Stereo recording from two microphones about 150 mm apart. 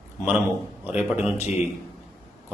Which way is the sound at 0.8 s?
10° right (ahead or behind).